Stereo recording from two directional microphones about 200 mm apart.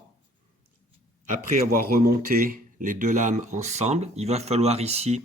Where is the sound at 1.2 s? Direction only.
40° right (ahead or behind).